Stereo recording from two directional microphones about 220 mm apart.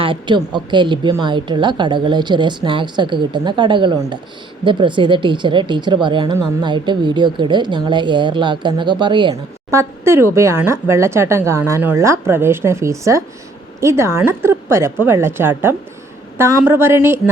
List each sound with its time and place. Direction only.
0.0 s a woman's voice: 20° right (ahead or behind)